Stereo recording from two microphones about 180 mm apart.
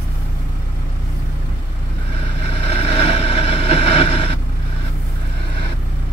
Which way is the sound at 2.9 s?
35° left (ahead or behind).